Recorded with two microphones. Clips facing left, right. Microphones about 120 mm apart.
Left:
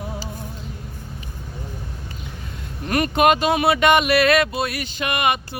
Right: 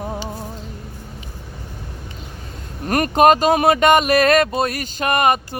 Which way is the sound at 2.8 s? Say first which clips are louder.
Right 4 dB; 45° right (ahead or behind).